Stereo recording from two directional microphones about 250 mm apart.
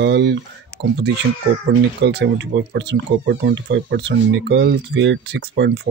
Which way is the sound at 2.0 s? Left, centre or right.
Right.